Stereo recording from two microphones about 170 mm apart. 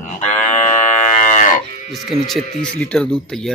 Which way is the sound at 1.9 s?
Centre (ahead or behind).